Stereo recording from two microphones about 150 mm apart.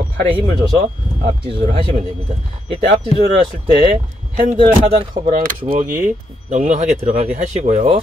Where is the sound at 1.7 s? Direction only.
35° right (ahead or behind).